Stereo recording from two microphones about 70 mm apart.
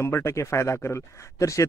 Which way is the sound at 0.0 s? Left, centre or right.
Left.